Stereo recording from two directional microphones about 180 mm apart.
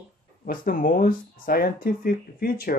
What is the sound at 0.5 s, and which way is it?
Speech, 50° left (ahead or behind).